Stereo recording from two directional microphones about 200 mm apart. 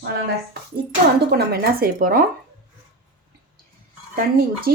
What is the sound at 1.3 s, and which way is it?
Speech, 50° right (ahead or behind).